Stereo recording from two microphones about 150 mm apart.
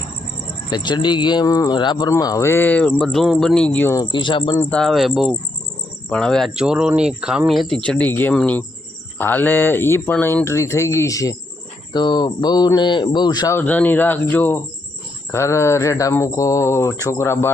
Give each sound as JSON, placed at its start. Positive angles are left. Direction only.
{"t": 0.7, "sound": "speech", "side_deg": 30}
{"t": 4.0, "sound": "speech", "side_deg": 30}
{"t": 4.5, "sound": "speech", "side_deg": 5}
{"t": 13.6, "sound": "speech", "side_deg": 10}